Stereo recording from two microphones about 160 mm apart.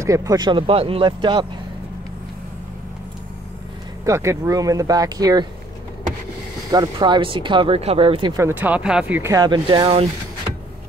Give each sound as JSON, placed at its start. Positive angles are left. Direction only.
{"t": 0.0, "sound": "speech", "side_deg": -20}
{"t": 4.0, "sound": "speech", "side_deg": -20}
{"t": 6.7, "sound": "speech", "side_deg": -25}
{"t": 8.4, "sound": "speech", "side_deg": -15}